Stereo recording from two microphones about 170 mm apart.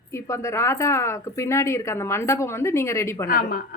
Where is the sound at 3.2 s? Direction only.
55° left (ahead or behind).